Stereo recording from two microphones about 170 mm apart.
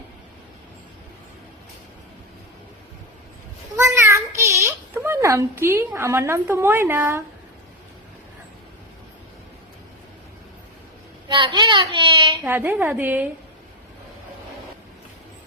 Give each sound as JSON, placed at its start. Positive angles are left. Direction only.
{"t": 3.8, "sound": "a sound", "side_deg": -15}
{"t": 11.3, "sound": "a child's voice", "side_deg": -30}
{"t": 12.3, "sound": "a woman's voice", "side_deg": -15}